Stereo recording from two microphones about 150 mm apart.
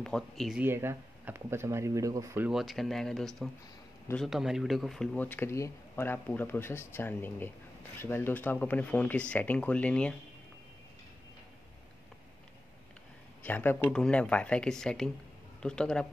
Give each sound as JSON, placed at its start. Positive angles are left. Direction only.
{"t": 0.0, "sound": "speech", "side_deg": 5}
{"t": 0.6, "sound": "speech", "side_deg": -15}
{"t": 2.5, "sound": "speech", "side_deg": 0}
{"t": 13.4, "sound": "speech", "side_deg": 10}